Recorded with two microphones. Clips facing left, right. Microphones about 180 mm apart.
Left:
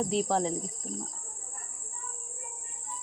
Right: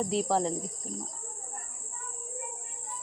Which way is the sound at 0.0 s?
Centre (ahead or behind).